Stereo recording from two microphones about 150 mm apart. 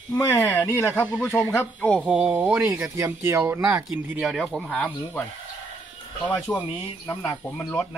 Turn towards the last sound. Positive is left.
turn(degrees=10)  # may be behind; listen again after turning